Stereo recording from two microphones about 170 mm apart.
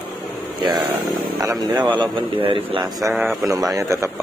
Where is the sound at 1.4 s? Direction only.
20° right (ahead or behind).